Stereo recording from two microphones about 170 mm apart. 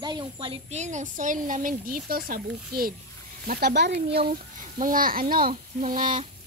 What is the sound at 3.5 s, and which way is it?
Speech, 70° right (ahead or behind).